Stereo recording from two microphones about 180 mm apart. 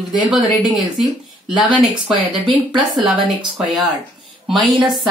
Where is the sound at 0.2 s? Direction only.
5° right (ahead or behind).